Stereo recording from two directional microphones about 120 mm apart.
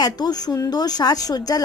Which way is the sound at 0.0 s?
35° left (ahead or behind).